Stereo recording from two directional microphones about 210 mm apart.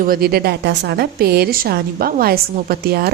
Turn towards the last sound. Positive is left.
turn(degrees=-45)  # may be behind; listen again after turning